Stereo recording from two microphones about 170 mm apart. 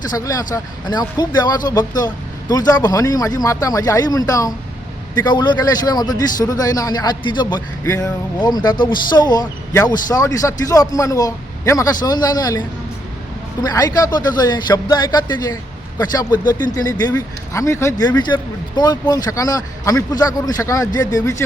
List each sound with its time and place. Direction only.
0.2 s speech: 20° left (ahead or behind)